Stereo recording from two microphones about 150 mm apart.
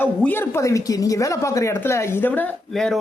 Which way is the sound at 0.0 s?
10° left (ahead or behind).